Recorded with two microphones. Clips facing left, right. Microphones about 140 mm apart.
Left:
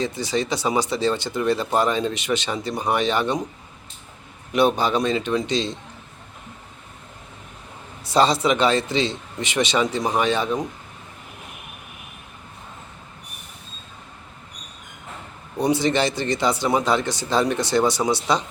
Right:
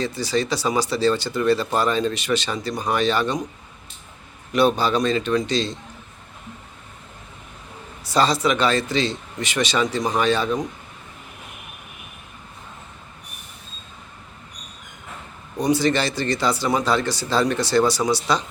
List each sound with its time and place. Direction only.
0.0 s speech: 20° left (ahead or behind)
4.5 s speech: 20° left (ahead or behind)
8.0 s speech: 25° left (ahead or behind)
15.6 s speech: 25° left (ahead or behind)